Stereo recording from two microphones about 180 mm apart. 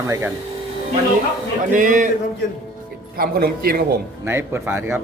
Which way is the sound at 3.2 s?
60° right (ahead or behind).